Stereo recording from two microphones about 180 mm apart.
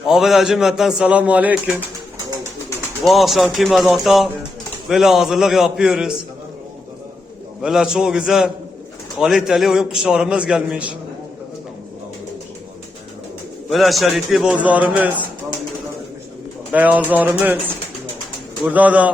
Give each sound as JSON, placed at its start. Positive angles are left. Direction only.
{"t": 0.0, "sound": "a man's voice", "side_deg": 0}
{"t": 3.1, "sound": "a man's voice", "side_deg": 0}
{"t": 7.6, "sound": "a man's voice", "side_deg": -5}
{"t": 13.7, "sound": "a man's voice", "side_deg": 0}
{"t": 16.7, "sound": "music", "side_deg": -10}
{"t": 18.6, "sound": "music", "side_deg": -10}